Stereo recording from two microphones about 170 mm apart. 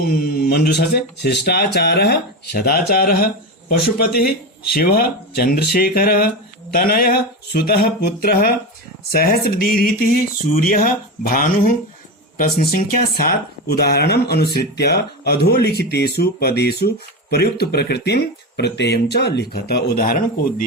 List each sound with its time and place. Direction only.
0.0 s speech: 65° left (ahead or behind)